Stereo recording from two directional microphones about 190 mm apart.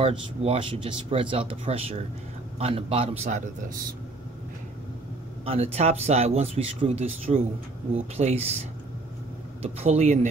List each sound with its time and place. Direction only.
0.0 s speech: 30° right (ahead or behind)
5.4 s speech: 30° right (ahead or behind)
9.6 s speech: 35° right (ahead or behind)